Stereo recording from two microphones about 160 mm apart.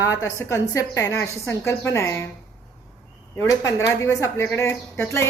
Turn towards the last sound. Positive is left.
turn(degrees=15)  # may be behind; listen again after turning